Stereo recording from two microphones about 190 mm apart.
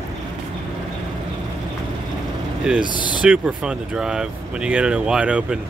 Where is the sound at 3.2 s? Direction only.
5° right (ahead or behind).